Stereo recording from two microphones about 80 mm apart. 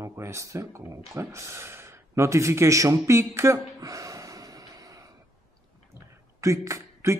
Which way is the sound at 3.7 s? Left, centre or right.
Right.